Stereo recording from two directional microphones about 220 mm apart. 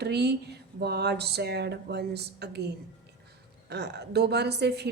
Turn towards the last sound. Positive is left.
turn(degrees=-50)  # may be behind; listen again after turning